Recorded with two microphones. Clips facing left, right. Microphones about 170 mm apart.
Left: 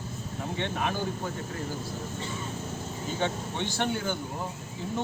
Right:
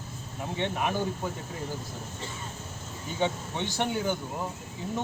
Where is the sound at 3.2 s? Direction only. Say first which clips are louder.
Right 2 dB; 15° right (ahead or behind).